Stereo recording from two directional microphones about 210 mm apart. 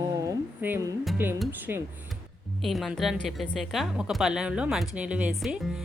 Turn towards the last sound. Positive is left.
turn(degrees=0)  # may be behind; listen again after turning